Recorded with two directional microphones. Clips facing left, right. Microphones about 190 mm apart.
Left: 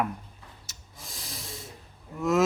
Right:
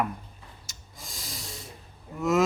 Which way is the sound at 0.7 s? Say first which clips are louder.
Right 1 dB; centre (ahead or behind).